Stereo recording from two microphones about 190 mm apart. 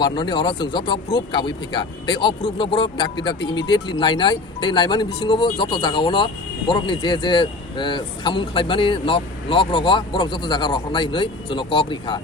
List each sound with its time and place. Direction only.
0.0 s speech: 25° left (ahead or behind)